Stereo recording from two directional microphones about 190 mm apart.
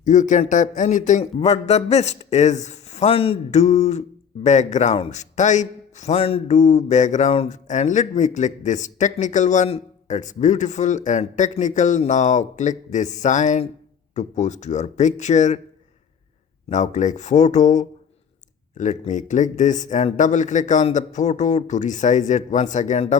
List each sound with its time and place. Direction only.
0.0 s a man's voice: 40° left (ahead or behind)
16.6 s a man's voice: 40° left (ahead or behind)